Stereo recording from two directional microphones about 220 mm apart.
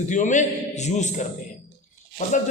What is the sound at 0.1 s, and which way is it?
A man's voice, 35° left (ahead or behind).